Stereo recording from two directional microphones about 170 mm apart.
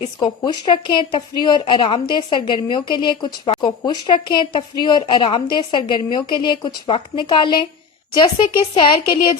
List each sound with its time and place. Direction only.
0.4 s a woman's voice: 30° left (ahead or behind)